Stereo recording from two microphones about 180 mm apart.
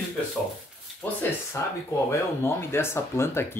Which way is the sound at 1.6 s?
15° left (ahead or behind).